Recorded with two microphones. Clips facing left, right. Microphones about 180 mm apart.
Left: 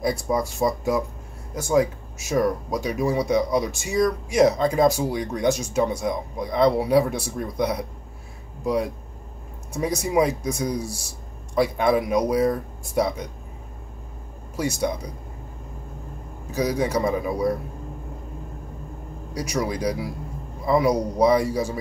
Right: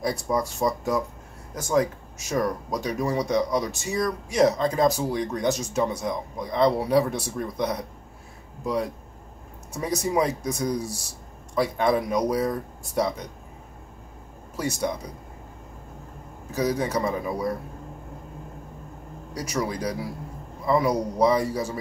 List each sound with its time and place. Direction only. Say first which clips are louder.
0.0 s speech: left 2 dB; 10° left (ahead or behind)
9.8 s speech: left 3 dB; 10° left (ahead or behind)
14.6 s speech: left 3 dB; 10° left (ahead or behind)
16.5 s speech: left 2 dB; 10° left (ahead or behind)
19.3 s speech: left 2 dB; 10° left (ahead or behind)